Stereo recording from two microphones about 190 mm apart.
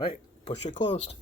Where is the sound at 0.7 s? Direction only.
25° left (ahead or behind).